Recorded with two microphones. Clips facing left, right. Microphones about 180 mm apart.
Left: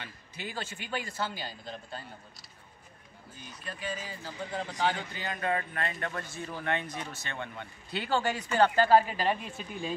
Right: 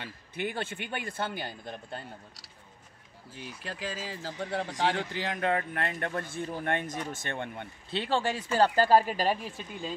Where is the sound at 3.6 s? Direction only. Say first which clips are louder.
Even; 90° right; by 7.7 s 50° right (ahead or behind).